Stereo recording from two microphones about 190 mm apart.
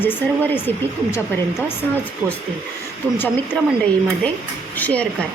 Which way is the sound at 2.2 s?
15° right (ahead or behind).